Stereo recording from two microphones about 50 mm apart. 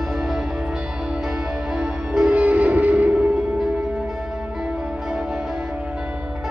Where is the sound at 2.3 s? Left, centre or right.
Right.